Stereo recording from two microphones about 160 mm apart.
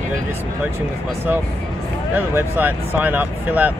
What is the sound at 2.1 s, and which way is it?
Speech, 10° right (ahead or behind).